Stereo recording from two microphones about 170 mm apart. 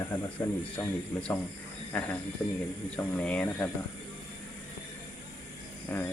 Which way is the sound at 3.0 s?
10° left (ahead or behind).